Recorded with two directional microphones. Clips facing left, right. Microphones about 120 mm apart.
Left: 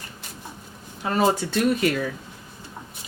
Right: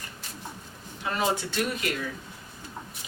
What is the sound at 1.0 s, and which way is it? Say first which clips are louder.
Speech: left 6 dB; 40° left (ahead or behind).